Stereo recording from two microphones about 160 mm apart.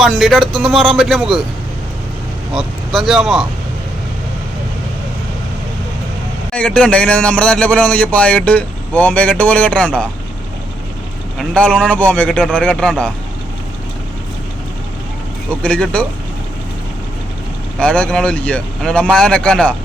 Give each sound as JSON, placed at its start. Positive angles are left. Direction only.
{"t": 0.0, "sound": "speech", "side_deg": 0}
{"t": 2.6, "sound": "speech", "side_deg": 0}
{"t": 6.5, "sound": "a man's voice", "side_deg": 5}
{"t": 11.3, "sound": "a man's voice", "side_deg": 5}
{"t": 15.6, "sound": "a man's voice", "side_deg": 5}
{"t": 17.7, "sound": "speech", "side_deg": 5}